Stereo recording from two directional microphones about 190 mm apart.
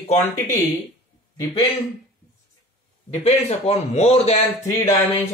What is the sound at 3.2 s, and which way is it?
Speech, 35° left (ahead or behind).